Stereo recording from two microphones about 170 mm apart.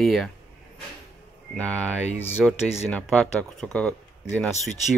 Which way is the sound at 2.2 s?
10° left (ahead or behind).